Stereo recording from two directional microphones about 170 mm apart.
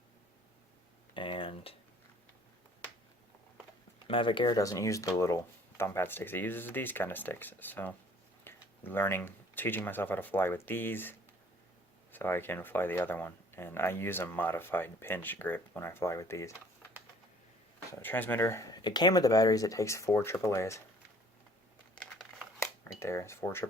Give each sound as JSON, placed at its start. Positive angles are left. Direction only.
{"t": 1.1, "sound": "a sound", "side_deg": 30}
{"t": 4.0, "sound": "speech", "side_deg": 30}
{"t": 18.0, "sound": "speech", "side_deg": 10}
{"t": 23.0, "sound": "speech", "side_deg": 15}